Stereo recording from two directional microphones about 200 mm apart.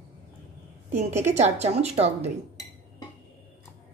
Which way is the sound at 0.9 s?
35° right (ahead or behind).